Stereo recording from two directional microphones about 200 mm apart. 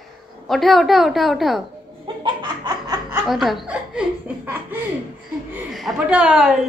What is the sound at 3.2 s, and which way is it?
A woman's voice, centre (ahead or behind).